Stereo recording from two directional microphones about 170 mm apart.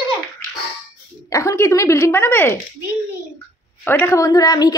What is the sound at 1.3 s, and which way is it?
Speech, 15° left (ahead or behind).